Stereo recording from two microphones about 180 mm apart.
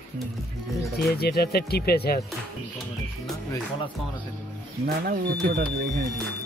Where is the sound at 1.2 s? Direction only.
60° left (ahead or behind).